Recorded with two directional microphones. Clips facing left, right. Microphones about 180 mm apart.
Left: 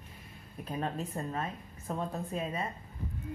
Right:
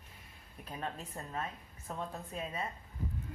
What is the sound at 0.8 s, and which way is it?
Speech, 45° left (ahead or behind).